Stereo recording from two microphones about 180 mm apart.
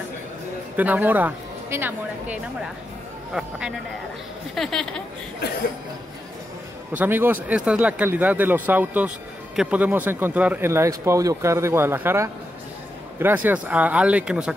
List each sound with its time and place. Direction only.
0.7 s a woman's voice: 10° right (ahead or behind)
7.0 s speech: 10° right (ahead or behind)